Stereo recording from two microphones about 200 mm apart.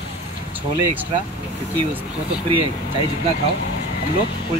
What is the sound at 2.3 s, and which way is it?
Speech, 25° right (ahead or behind).